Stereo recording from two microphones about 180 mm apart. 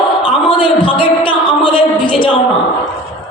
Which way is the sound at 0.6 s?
30° left (ahead or behind).